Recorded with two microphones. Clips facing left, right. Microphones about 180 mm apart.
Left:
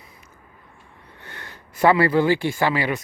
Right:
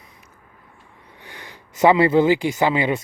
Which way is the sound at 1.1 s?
15° right (ahead or behind).